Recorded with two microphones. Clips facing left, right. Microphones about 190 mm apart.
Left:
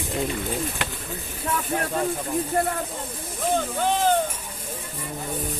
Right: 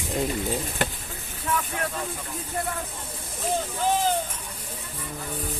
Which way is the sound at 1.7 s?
40° left (ahead or behind).